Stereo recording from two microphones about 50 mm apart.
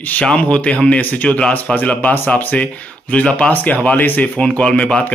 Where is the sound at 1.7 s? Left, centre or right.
Left.